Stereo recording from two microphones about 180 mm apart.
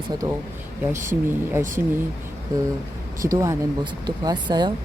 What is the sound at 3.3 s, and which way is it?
Speech, 20° right (ahead or behind).